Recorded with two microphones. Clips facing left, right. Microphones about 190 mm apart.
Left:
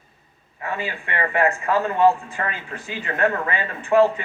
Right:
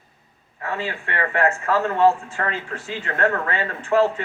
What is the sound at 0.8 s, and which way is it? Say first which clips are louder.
Speech: even; 15° left (ahead or behind).